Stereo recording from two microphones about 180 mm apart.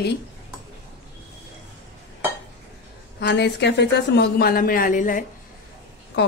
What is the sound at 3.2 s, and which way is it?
Speech, 75° left (ahead or behind).